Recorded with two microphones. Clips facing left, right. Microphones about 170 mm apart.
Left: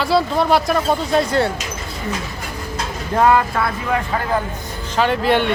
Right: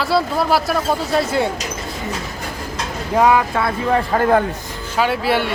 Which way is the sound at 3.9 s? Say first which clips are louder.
Right 6 dB; 45° right (ahead or behind).